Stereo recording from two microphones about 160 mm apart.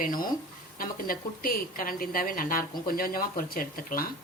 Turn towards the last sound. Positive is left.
turn(degrees=65)  # may be behind; listen again after turning